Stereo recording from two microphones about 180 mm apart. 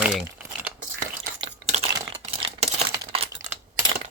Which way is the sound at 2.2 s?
35° right (ahead or behind).